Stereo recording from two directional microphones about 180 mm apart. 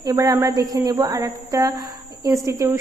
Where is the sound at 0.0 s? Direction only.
20° right (ahead or behind).